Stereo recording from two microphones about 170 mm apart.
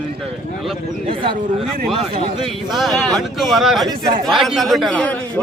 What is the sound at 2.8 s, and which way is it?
A man's voice, centre (ahead or behind).